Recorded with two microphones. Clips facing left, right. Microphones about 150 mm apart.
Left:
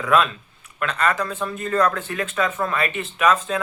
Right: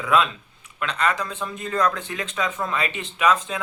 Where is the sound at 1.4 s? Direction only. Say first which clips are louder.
Left 2 dB; 15° right (ahead or behind).